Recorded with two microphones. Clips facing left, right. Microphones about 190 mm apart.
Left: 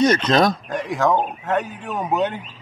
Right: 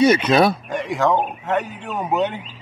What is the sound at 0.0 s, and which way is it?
Speech, 10° right (ahead or behind).